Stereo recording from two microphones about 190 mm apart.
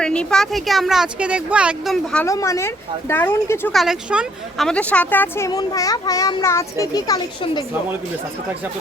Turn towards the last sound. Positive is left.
turn(degrees=25)  # may be behind; listen again after turning